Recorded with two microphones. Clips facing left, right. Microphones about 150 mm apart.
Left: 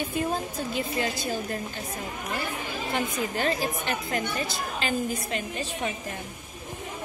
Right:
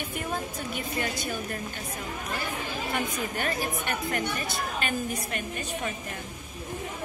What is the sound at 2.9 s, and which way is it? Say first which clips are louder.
A woman's voice: left 3 dB; 25° left (ahead or behind).